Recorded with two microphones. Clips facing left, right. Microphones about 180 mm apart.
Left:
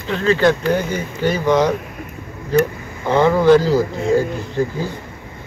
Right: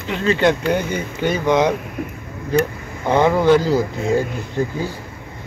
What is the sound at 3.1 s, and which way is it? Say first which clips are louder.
Speech: left 2 dB; 15° right (ahead or behind).